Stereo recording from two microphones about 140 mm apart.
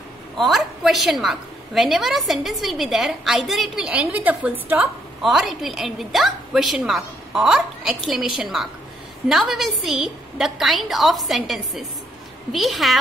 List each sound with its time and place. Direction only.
0.4 s a woman's voice: centre (ahead or behind)
5.2 s a woman's voice: centre (ahead or behind)